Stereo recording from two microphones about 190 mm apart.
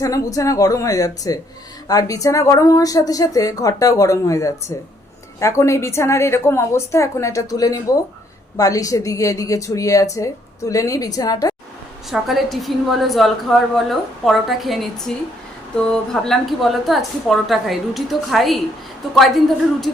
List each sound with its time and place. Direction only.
0.0 s a woman's voice: 15° left (ahead or behind)
12.1 s a woman's voice: centre (ahead or behind)